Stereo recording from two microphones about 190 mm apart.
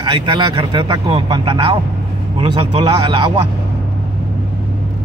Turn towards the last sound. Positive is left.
turn(degrees=-25)  # may be behind; listen again after turning